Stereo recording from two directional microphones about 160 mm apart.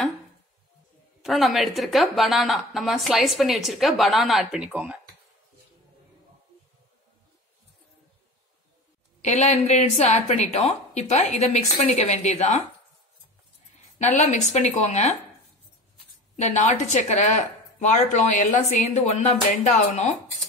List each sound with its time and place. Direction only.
1.2 s a woman's voice: centre (ahead or behind)
9.2 s speech: 45° left (ahead or behind)
13.9 s speech: 45° left (ahead or behind)
16.3 s speech: 45° left (ahead or behind)